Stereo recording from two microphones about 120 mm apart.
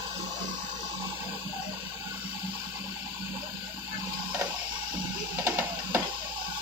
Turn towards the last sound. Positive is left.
turn(degrees=-20)  # may be behind; listen again after turning